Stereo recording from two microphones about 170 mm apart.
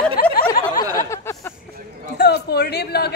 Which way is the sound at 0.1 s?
60° left (ahead or behind).